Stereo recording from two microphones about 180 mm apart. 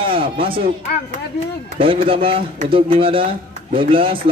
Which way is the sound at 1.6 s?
30° right (ahead or behind).